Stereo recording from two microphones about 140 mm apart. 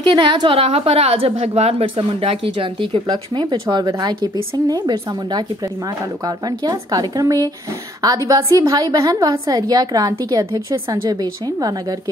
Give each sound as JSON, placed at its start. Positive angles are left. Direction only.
{"t": 0.1, "sound": "a woman's voice", "side_deg": -35}